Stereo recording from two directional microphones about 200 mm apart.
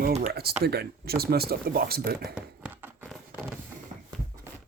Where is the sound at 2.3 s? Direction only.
10° right (ahead or behind).